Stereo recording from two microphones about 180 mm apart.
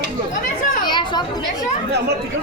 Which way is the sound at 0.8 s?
25° left (ahead or behind).